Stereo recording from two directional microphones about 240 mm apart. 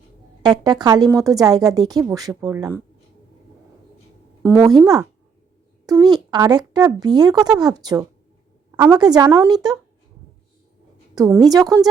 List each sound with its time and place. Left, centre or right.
0.4 s a woman's voice: centre
4.4 s a woman's voice: centre
11.1 s a woman's voice: centre